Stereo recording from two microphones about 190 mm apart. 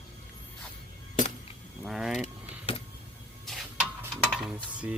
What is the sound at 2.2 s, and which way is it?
Mechanisms, 30° left (ahead or behind).